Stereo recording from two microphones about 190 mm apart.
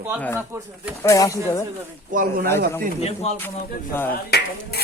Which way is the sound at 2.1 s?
50° right (ahead or behind).